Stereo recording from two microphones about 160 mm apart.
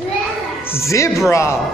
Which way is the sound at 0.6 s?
15° left (ahead or behind).